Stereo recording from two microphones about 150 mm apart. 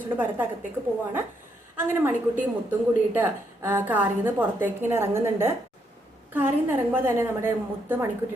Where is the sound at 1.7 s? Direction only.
15° right (ahead or behind).